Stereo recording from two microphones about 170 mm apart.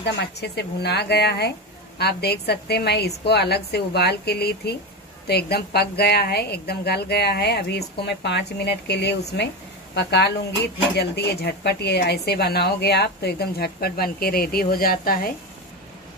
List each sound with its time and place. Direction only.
0.0 s a woman's voice: 80° left
9.9 s a woman's voice: 85° left; by 15.3 s 60° left (ahead or behind)